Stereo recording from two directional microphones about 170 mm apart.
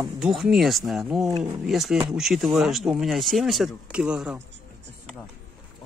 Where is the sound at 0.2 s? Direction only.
Centre (ahead or behind).